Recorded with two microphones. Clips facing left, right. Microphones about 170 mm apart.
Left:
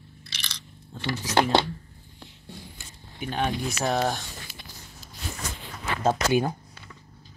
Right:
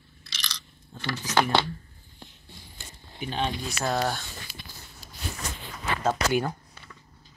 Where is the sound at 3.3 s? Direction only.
15° left (ahead or behind).